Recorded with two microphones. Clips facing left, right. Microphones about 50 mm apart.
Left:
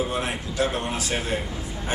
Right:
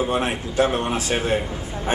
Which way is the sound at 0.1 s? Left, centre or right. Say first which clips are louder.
Right 5 dB; right.